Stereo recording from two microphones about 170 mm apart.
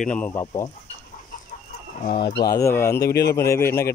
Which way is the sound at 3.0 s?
70° left (ahead or behind).